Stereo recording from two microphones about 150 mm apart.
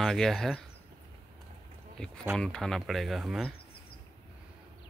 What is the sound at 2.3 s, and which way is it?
Speech, 5° left (ahead or behind).